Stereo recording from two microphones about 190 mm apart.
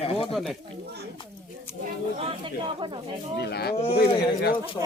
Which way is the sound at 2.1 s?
30° right (ahead or behind).